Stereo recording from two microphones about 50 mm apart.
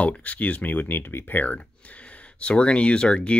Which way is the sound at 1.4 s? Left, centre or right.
Left.